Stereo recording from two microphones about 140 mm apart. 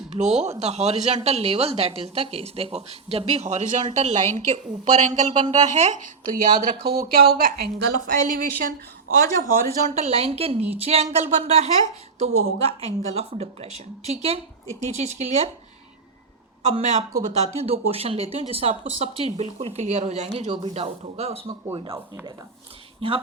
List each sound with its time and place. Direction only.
0.1 s a woman's voice: 55° right (ahead or behind)
5.3 s speech: 35° right (ahead or behind)
5.8 s speech: 65° right (ahead or behind)
6.6 s speech: 90° right; by 8.7 s 70° right (ahead or behind)
9.9 s a woman's voice: 50° right (ahead or behind)
16.6 s a woman's voice: 50° right (ahead or behind)
21.9 s speech: 20° right (ahead or behind)
23.0 s speech: 40° right (ahead or behind)